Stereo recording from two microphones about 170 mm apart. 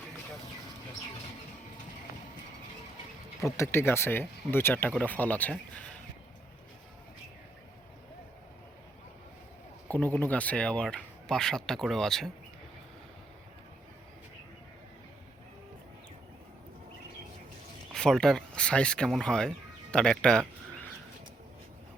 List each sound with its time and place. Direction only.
3.4 s speech: 15° left (ahead or behind)
9.9 s speech: 10° left (ahead or behind)
17.9 s speech: 5° left (ahead or behind)